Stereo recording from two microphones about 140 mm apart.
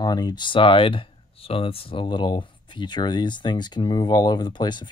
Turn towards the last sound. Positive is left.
turn(degrees=30)  # may be behind; listen again after turning